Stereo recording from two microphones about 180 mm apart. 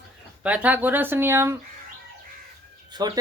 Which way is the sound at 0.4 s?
10° right (ahead or behind).